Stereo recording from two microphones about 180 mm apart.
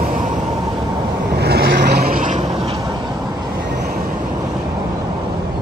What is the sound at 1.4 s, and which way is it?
Vehicle, 65° right (ahead or behind).